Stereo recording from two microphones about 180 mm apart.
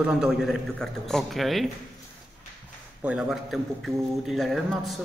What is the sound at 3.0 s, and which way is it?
A man's voice, 5° right (ahead or behind).